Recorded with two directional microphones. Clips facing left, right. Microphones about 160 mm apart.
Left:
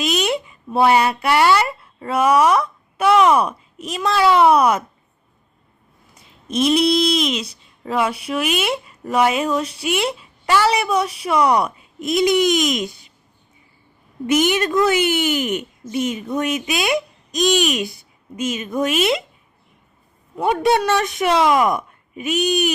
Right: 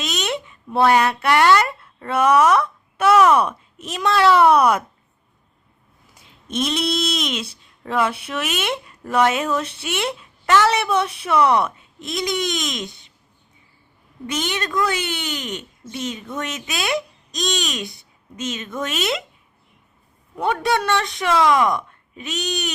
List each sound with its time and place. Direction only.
0.0 s speech: 5° left (ahead or behind)
6.1 s a woman's voice: 5° left (ahead or behind)
14.3 s speech: 10° left (ahead or behind)
18.9 s speech: 5° left (ahead or behind)
20.3 s a man's voice: 5° left (ahead or behind)
20.6 s speech: 15° left (ahead or behind)
21.8 s speech: 5° left (ahead or behind)